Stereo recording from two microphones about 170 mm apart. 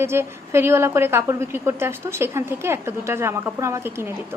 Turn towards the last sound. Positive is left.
turn(degrees=-15)  # may be behind; listen again after turning